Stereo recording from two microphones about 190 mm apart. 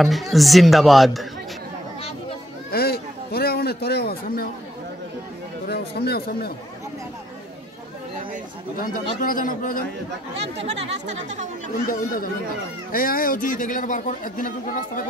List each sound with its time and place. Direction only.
0.0 s speech: centre (ahead or behind)
2.0 s chatter: 30° left (ahead or behind)
2.7 s a sound: 55° left (ahead or behind)
5.7 s speech: 55° left (ahead or behind)
8.7 s a man's voice: 45° left (ahead or behind)
10.3 s speech: 35° right (ahead or behind)
12.9 s a man's voice: 50° left (ahead or behind)